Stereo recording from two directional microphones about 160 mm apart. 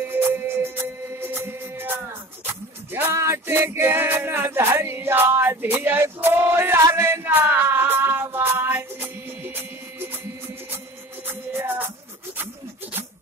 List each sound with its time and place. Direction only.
0.1 s music: 15° right (ahead or behind)
11.2 s music: 15° right (ahead or behind)